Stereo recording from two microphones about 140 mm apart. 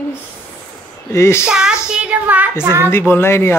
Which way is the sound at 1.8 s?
5° right (ahead or behind).